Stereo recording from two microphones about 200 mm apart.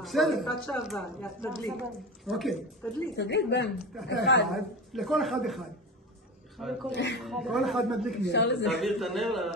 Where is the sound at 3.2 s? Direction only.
60° left (ahead or behind).